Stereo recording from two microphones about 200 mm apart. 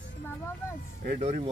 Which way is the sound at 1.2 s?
35° right (ahead or behind).